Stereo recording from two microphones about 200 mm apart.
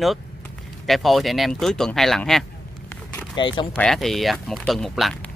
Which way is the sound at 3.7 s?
5° left (ahead or behind).